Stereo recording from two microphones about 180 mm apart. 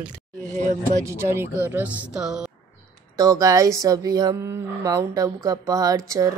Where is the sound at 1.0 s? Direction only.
15° right (ahead or behind).